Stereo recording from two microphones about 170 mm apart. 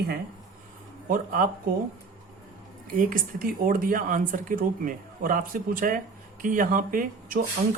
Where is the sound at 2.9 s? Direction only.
55° right (ahead or behind).